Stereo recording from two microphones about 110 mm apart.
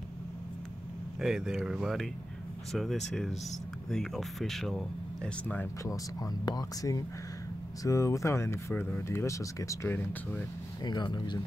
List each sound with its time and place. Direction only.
1.2 s speech: centre (ahead or behind)
6.4 s speech: 35° left (ahead or behind)
9.8 s speech: 20° left (ahead or behind)
10.8 s speech: 40° left (ahead or behind)